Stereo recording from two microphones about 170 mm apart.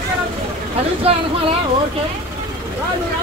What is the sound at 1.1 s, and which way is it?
Speech, 35° right (ahead or behind).